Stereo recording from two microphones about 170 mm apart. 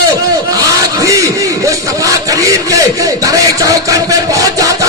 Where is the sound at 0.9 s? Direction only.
20° right (ahead or behind).